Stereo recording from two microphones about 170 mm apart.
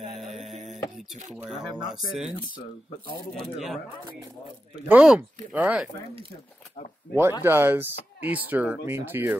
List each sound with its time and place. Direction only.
0.1 s a sound: centre (ahead or behind)
0.7 s music: 45° right (ahead or behind)
1.3 s speech: centre (ahead or behind)
3.5 s speech: centre (ahead or behind)
4.8 s speech: 5° right (ahead or behind)
7.1 s speech: 65° left (ahead or behind)
7.4 s speech: 10° right (ahead or behind)